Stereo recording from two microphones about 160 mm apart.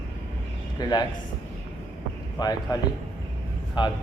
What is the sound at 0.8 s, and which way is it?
Speech, 25° left (ahead or behind).